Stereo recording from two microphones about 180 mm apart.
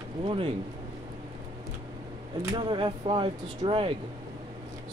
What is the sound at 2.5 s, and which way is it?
Speech, 25° right (ahead or behind).